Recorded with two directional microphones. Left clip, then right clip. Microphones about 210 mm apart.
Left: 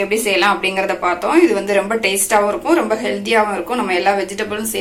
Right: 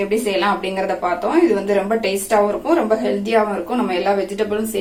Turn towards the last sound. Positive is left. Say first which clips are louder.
# right 1 dB
turn(degrees=0)  # may be behind; listen again after turning